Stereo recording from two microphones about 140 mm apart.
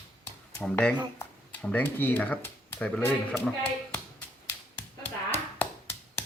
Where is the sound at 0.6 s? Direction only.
10° left (ahead or behind).